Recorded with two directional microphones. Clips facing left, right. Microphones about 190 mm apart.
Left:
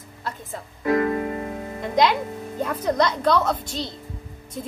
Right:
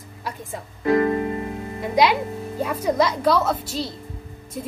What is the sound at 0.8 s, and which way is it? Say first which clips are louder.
Keyboard: right 2 dB; 30° right (ahead or behind).